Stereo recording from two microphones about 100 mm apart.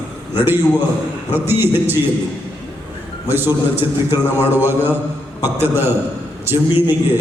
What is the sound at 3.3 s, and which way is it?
A man's voice, 20° right (ahead or behind).